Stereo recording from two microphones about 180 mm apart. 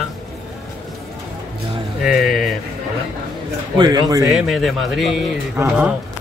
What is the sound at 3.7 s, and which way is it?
Speech, 25° right (ahead or behind).